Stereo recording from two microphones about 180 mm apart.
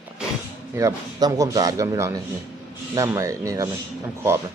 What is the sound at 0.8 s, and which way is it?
A man's voice, 15° right (ahead or behind).